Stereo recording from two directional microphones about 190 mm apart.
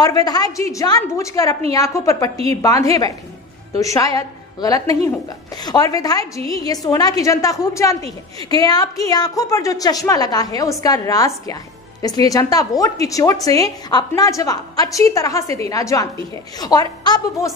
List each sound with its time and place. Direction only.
0.0 s a woman's voice: 20° left (ahead or behind)
2.3 s a woman's voice: 30° right (ahead or behind)
2.6 s a woman's voice: 15° left (ahead or behind)